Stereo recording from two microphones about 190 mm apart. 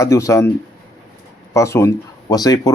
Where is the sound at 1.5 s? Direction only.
15° left (ahead or behind).